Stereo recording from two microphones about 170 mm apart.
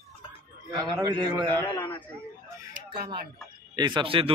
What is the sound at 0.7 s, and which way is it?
Speech, 25° right (ahead or behind).